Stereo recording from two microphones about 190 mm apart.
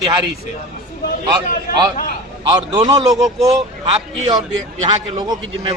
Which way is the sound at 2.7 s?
20° right (ahead or behind).